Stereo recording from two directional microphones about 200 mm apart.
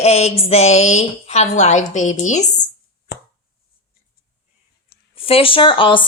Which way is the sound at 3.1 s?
55° left (ahead or behind).